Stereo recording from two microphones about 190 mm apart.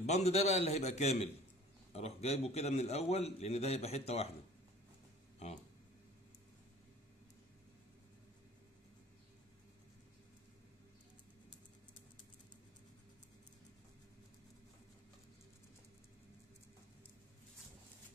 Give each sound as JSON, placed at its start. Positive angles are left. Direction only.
{"t": 0.0, "sound": "a man's voice", "side_deg": 35}